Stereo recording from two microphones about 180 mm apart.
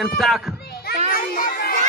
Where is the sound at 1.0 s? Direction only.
55° left (ahead or behind).